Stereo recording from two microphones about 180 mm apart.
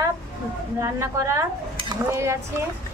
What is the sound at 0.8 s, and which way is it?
A woman's voice, 15° right (ahead or behind).